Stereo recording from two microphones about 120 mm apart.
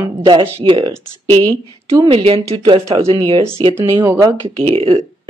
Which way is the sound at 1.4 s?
30° right (ahead or behind).